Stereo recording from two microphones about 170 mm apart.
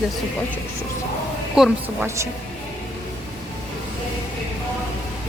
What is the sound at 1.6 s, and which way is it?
Speech, 5° right (ahead or behind).